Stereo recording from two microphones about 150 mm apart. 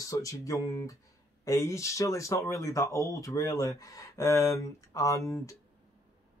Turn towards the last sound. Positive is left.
turn(degrees=20)  # may be behind; listen again after turning